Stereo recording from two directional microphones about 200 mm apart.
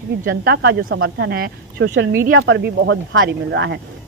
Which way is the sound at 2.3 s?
75° right (ahead or behind).